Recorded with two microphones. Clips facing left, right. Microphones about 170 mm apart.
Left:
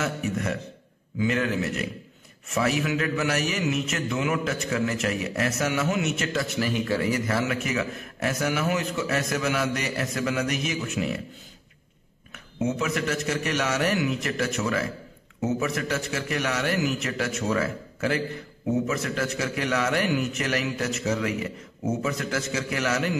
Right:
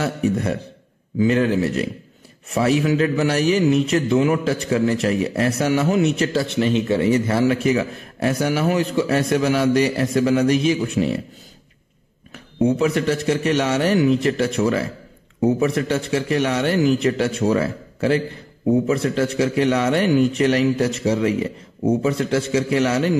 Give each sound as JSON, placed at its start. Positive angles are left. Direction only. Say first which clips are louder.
{"t": 0.0, "sound": "a man's voice", "louder": "right 7 dB", "side_deg": -35}
{"t": 12.5, "sound": "a man's voice", "louder": "right 8 dB", "side_deg": -35}